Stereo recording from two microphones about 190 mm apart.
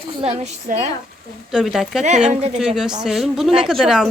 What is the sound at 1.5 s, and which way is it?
Speech, centre (ahead or behind).